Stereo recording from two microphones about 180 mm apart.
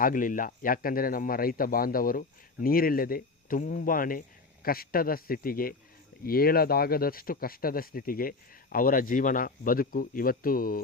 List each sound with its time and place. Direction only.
0.0 s speech: 50° left (ahead or behind)